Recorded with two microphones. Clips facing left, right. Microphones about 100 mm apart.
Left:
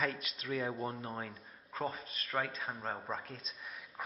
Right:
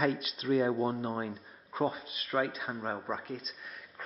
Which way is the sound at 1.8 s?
5° right (ahead or behind).